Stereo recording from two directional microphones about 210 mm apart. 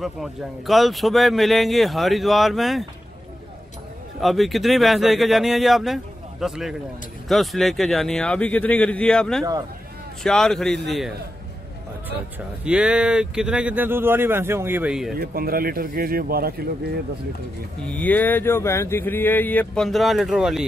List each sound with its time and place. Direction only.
0.0 s speech: centre (ahead or behind)
4.2 s speech: centre (ahead or behind)
9.4 s speech: 20° right (ahead or behind)
10.2 s speech: centre (ahead or behind)
12.6 s speech: 5° right (ahead or behind)
15.1 s speech: 45° right (ahead or behind)
17.8 s speech: 5° left (ahead or behind)